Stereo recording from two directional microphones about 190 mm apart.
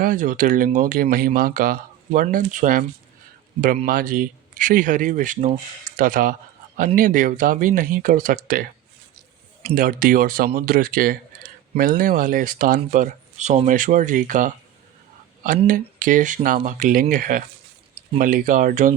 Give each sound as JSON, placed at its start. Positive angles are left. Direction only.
{"t": 0.0, "sound": "speech", "side_deg": -45}
{"t": 3.8, "sound": "speech", "side_deg": -45}
{"t": 9.7, "sound": "speech", "side_deg": -50}
{"t": 15.6, "sound": "speech", "side_deg": -45}